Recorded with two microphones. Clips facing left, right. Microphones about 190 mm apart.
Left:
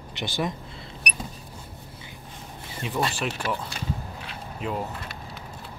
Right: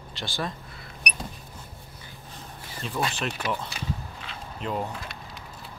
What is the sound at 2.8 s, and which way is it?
Speech, 15° left (ahead or behind).